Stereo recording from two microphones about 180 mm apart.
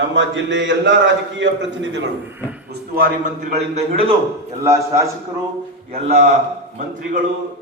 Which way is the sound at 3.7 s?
30° right (ahead or behind).